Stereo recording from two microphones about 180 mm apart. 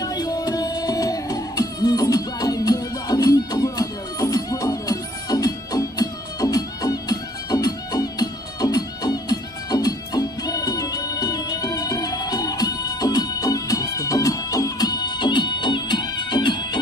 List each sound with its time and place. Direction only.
0.0 s music: 20° left (ahead or behind)